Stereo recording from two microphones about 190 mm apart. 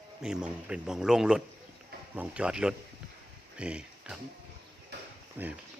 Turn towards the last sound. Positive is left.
turn(degrees=-10)  # may be behind; listen again after turning